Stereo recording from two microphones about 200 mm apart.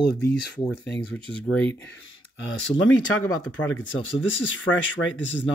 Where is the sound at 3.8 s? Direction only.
70° left (ahead or behind).